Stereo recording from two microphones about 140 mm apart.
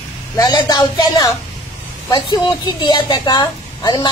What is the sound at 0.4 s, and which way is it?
A woman's voice, 30° left (ahead or behind).